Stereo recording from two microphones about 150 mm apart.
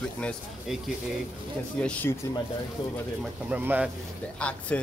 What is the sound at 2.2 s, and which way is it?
Speech, 20° left (ahead or behind).